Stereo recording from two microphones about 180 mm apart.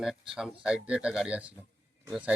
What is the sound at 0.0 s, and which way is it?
Speech, 5° right (ahead or behind).